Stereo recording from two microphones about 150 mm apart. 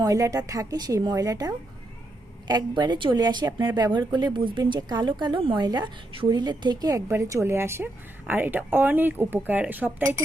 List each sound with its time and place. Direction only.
0.0 s speech: 25° right (ahead or behind)